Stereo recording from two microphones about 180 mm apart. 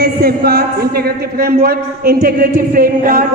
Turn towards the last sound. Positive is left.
turn(degrees=-55)  # may be behind; listen again after turning